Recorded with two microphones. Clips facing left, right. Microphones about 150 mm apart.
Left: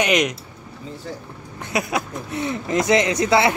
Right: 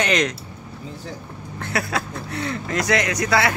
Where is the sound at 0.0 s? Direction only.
15° left (ahead or behind).